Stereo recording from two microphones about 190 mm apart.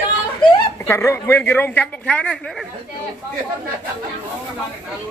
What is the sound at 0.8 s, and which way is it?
A man's voice, 15° left (ahead or behind).